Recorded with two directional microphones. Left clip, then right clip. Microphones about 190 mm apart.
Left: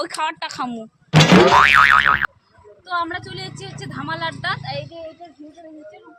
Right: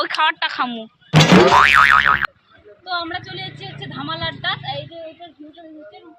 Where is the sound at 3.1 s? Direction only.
35° left (ahead or behind).